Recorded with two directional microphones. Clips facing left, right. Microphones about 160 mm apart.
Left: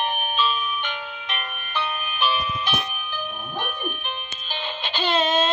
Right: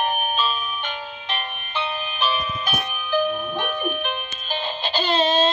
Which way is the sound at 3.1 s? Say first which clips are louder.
Right 13 dB; 90° right.